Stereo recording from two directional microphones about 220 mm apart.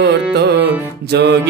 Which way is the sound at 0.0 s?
50° right (ahead or behind).